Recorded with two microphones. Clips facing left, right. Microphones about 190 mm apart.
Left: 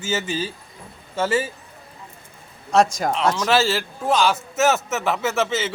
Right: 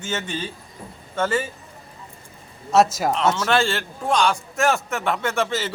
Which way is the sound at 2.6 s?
5° right (ahead or behind).